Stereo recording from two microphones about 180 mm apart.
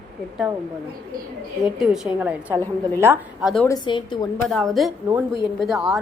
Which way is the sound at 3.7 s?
25° left (ahead or behind).